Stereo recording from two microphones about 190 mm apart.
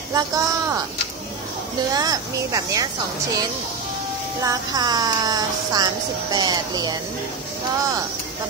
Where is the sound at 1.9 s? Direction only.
20° right (ahead or behind).